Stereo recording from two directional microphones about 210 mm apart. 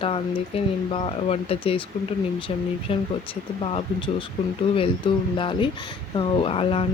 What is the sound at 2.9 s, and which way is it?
Speech, 25° left (ahead or behind).